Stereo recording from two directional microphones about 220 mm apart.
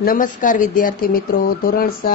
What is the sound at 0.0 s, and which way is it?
Speech, 40° left (ahead or behind).